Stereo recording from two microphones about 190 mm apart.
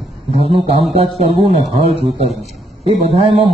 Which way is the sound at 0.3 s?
30° right (ahead or behind).